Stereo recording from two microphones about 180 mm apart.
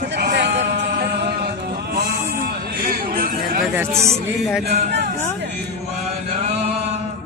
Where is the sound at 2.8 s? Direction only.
55° right (ahead or behind).